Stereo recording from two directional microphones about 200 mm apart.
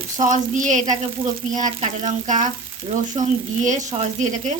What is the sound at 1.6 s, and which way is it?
Frying, 35° right (ahead or behind).